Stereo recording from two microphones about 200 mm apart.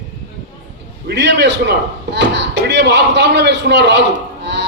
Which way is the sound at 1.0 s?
60° right (ahead or behind).